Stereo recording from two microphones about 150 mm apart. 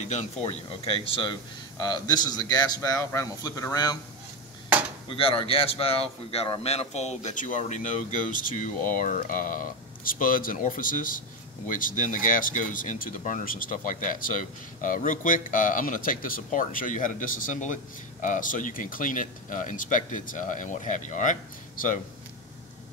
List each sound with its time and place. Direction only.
0.1 s speech: 45° left (ahead or behind); by 4.0 s 25° left (ahead or behind)
5.1 s speech: 35° left (ahead or behind); by 22.0 s 60° left (ahead or behind)